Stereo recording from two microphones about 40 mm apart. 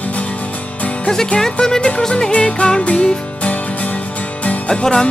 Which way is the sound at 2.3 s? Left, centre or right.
Left.